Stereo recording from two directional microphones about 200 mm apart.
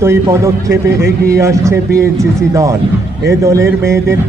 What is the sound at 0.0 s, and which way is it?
A man's voice, 15° right (ahead or behind).